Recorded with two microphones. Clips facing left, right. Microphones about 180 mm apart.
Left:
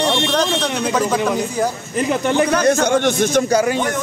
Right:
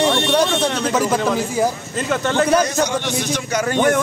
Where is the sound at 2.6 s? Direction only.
55° left (ahead or behind).